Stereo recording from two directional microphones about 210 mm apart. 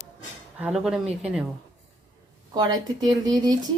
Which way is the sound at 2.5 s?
20° right (ahead or behind).